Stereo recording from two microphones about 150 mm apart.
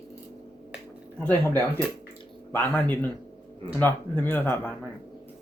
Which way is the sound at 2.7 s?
10° left (ahead or behind).